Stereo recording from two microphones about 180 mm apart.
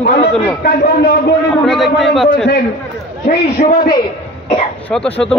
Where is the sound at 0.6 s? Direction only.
65° left (ahead or behind).